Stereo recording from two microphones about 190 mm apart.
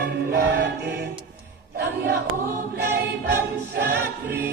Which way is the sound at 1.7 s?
60° right (ahead or behind).